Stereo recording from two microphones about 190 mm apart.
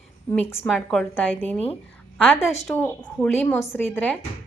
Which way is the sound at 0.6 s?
Centre (ahead or behind).